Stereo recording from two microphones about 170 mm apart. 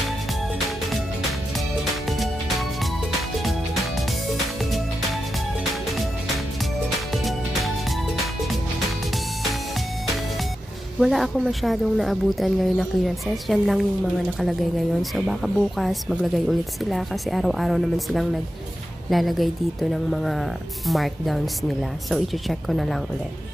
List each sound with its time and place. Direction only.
2.0 s music: centre (ahead or behind)
7.1 s music: centre (ahead or behind)
11.0 s speech: centre (ahead or behind)